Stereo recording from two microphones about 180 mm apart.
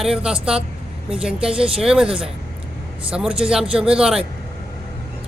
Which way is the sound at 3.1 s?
5° right (ahead or behind).